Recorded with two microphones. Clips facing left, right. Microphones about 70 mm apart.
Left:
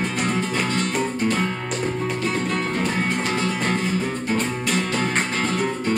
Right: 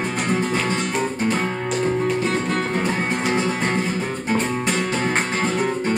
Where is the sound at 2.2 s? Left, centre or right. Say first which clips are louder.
Right 2 dB; right.